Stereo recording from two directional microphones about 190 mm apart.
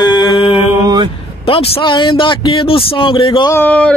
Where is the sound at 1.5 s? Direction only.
30° left (ahead or behind).